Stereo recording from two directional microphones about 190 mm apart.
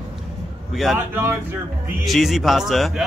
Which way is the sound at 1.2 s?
10° right (ahead or behind).